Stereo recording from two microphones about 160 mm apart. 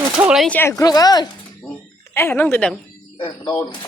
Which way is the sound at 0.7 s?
20° left (ahead or behind).